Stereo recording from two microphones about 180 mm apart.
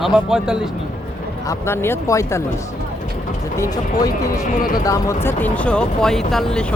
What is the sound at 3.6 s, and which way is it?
Speech, 20° left (ahead or behind).